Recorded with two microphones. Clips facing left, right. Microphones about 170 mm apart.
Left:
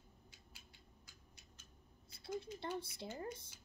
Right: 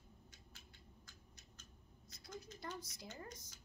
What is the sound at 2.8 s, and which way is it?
Speech, 30° left (ahead or behind).